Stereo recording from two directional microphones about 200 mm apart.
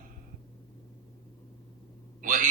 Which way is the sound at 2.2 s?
40° right (ahead or behind).